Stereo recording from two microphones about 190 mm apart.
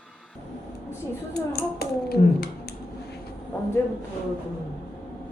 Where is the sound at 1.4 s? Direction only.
55° left (ahead or behind).